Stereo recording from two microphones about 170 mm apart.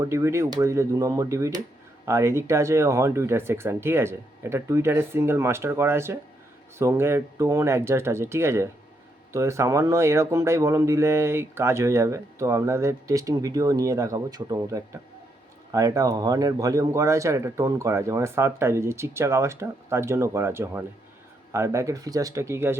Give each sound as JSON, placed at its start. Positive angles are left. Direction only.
{"t": 0.0, "sound": "speech", "side_deg": -15}